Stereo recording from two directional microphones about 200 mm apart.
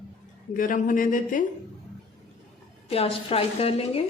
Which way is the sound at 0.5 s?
40° left (ahead or behind).